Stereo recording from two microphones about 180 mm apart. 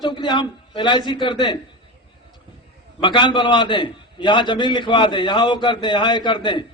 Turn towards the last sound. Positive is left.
turn(degrees=25)  # may be behind; listen again after turning